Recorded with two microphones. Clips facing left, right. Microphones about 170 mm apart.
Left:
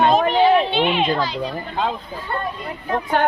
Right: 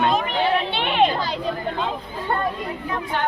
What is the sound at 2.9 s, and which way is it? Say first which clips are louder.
Speech: left 8 dB; 50° left (ahead or behind).